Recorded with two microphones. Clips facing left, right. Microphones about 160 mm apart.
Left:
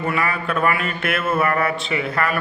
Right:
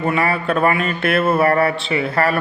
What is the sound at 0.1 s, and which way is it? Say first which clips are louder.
A man's voice: right 5 dB; 35° right (ahead or behind).